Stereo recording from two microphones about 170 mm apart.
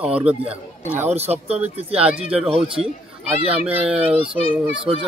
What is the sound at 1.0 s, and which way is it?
Speech, 40° right (ahead or behind).